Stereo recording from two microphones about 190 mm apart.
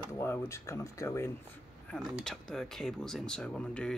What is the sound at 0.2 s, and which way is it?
Speech, 15° left (ahead or behind).